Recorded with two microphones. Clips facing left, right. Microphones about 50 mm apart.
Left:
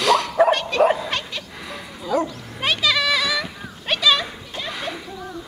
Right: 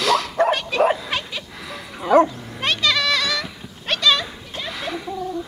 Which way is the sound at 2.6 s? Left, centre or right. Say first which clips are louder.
Even; centre.